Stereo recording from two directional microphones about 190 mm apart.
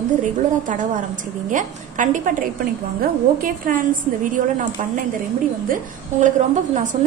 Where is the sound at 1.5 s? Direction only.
45° right (ahead or behind).